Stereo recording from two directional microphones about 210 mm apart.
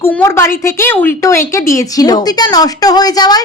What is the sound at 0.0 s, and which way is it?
A woman's voice, 10° left (ahead or behind).